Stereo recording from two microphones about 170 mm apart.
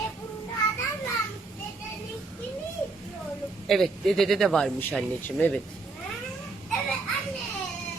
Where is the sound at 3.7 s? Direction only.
Centre (ahead or behind).